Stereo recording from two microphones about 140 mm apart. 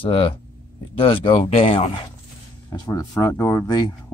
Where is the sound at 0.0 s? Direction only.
40° left (ahead or behind).